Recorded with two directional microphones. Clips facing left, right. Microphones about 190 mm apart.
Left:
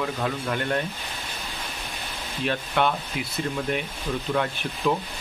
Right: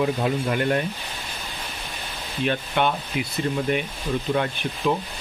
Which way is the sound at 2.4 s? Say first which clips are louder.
Right 1 dB; 5° right (ahead or behind).